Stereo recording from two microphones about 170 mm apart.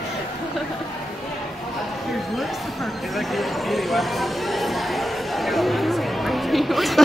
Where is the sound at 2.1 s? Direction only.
Centre (ahead or behind).